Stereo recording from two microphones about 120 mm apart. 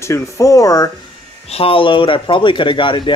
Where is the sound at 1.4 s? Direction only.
55° left (ahead or behind).